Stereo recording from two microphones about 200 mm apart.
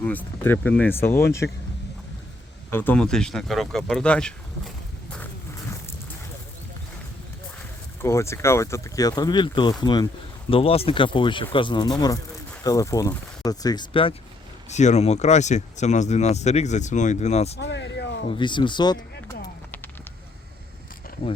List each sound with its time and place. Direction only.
0.0 s speech: 10° left (ahead or behind)
2.6 s speech: 10° left (ahead or behind)
8.0 s speech: 15° left (ahead or behind); by 17.6 s 35° left (ahead or behind)
17.6 s a sound: 60° left (ahead or behind)
18.3 s speech: 25° left (ahead or behind)